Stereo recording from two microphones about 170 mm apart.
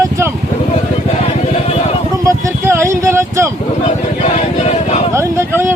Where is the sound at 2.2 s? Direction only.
20° right (ahead or behind).